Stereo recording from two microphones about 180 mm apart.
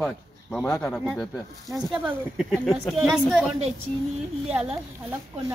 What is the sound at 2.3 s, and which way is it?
Speech, 5° right (ahead or behind).